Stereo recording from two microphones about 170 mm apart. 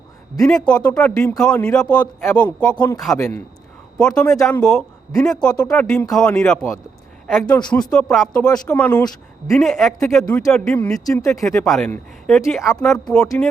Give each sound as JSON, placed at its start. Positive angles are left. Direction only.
{"t": 0.3, "sound": "speech", "side_deg": 5}
{"t": 3.9, "sound": "speech", "side_deg": 5}
{"t": 11.0, "sound": "speech", "side_deg": 20}
{"t": 11.3, "sound": "speech", "side_deg": 5}